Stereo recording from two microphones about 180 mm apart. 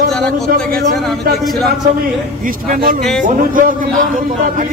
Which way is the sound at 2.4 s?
50° right (ahead or behind).